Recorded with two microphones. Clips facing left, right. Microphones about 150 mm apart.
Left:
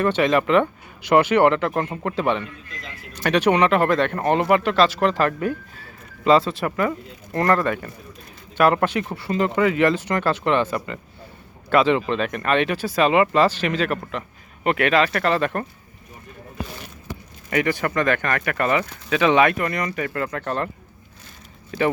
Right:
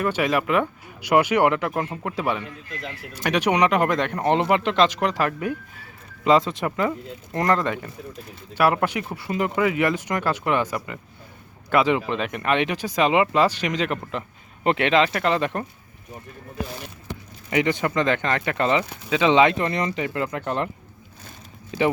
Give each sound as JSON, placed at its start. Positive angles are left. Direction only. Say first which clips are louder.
{"t": 0.0, "sound": "speech", "louder": "left 4 dB", "side_deg": -10}
{"t": 17.5, "sound": "speech", "louder": "even", "side_deg": -20}